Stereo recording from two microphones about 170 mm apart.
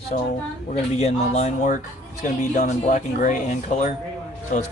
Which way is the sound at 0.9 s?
40° left (ahead or behind).